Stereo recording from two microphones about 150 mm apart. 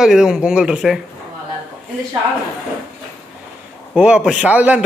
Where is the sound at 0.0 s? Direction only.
5° right (ahead or behind).